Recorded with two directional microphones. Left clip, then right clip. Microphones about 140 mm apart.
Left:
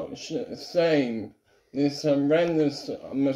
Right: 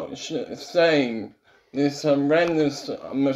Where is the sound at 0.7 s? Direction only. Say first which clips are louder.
Right 4 dB; 10° left (ahead or behind).